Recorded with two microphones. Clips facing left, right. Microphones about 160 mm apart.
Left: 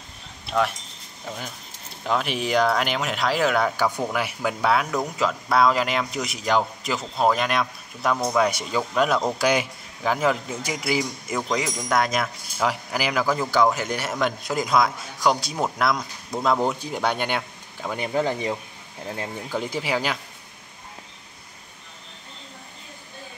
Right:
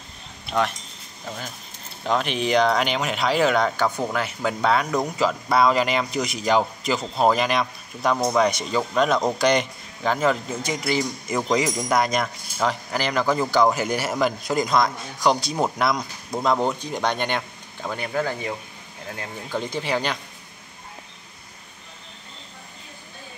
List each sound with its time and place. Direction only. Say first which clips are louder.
1.2 s speech: even; 5° left (ahead or behind)
11.4 s speech: right 6 dB; centre (ahead or behind)
17.9 s speech: left 2 dB; 20° left (ahead or behind)
19.5 s speech: right 1 dB; 10° left (ahead or behind)